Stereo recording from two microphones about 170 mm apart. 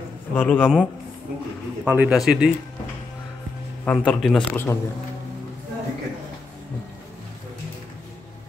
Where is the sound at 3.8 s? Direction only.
5° left (ahead or behind).